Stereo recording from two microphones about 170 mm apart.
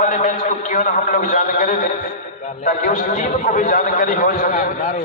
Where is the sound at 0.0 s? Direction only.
50° left (ahead or behind).